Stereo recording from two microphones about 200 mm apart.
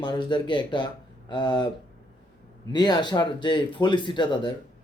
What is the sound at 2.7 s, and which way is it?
Speech, 20° left (ahead or behind).